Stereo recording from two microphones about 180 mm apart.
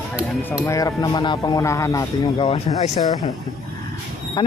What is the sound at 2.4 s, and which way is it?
Speech, 35° left (ahead or behind).